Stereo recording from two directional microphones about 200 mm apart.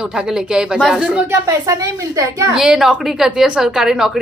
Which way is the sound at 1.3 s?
15° right (ahead or behind).